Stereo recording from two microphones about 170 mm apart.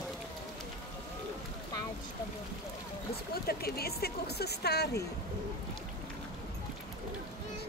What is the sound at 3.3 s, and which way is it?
Speech, 65° left (ahead or behind).